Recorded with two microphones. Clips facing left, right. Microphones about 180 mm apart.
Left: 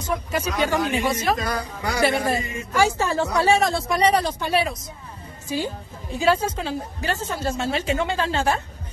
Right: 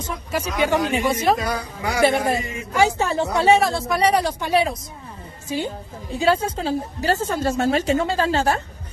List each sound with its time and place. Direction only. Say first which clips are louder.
0.3 s speech: right 4 dB; 15° right (ahead or behind)
1.3 s a man's voice: right 2 dB; 10° right (ahead or behind)
3.5 s speech: right 2 dB; 5° right (ahead or behind)
6.1 s a woman's voice: right 1 dB; 30° right (ahead or behind)